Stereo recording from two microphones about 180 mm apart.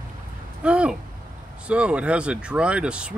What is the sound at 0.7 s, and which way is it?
Speech, 5° right (ahead or behind).